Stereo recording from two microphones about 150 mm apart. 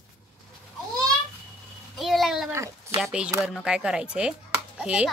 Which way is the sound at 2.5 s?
20° right (ahead or behind).